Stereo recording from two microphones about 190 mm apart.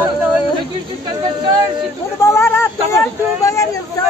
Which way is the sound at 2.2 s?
10° left (ahead or behind).